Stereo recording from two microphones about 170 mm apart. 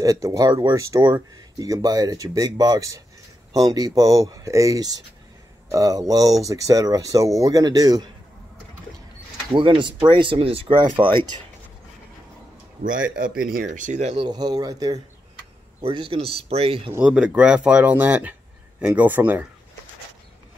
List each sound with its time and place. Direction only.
0.0 s speech: 20° right (ahead or behind)
9.5 s speech: 30° right (ahead or behind)
13.4 s speech: 55° right (ahead or behind)
14.1 s speech: 25° right (ahead or behind)
16.9 s speech: 5° right (ahead or behind)